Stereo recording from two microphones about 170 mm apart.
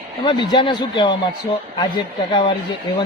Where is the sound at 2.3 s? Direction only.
30° left (ahead or behind).